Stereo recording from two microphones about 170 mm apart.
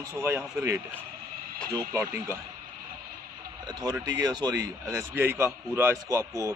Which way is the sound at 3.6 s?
25° right (ahead or behind).